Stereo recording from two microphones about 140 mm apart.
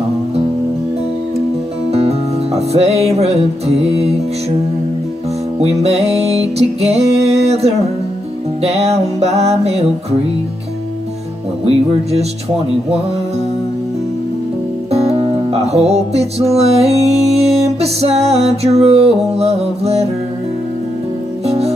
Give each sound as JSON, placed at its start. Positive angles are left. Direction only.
{"t": 1.9, "sound": "music", "side_deg": -45}
{"t": 5.6, "sound": "music", "side_deg": -50}
{"t": 11.6, "sound": "music", "side_deg": -50}
{"t": 14.9, "sound": "music", "side_deg": -45}
{"t": 21.5, "sound": "music", "side_deg": -45}